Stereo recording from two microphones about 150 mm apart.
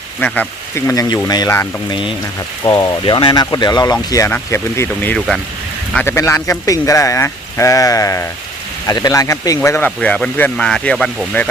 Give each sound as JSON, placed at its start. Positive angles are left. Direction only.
{"t": 0.2, "sound": "speech", "side_deg": 10}
{"t": 0.9, "sound": "speech", "side_deg": 25}
{"t": 1.9, "sound": "speech", "side_deg": 35}
{"t": 5.1, "sound": "speech", "side_deg": 0}
{"t": 6.1, "sound": "speech", "side_deg": 15}